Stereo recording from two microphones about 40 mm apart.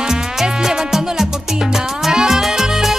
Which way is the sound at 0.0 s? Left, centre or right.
Centre.